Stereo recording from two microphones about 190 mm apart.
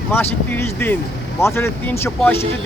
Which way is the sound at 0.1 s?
10° left (ahead or behind).